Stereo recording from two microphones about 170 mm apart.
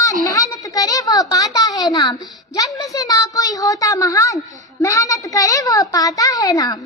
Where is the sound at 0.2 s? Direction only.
20° left (ahead or behind).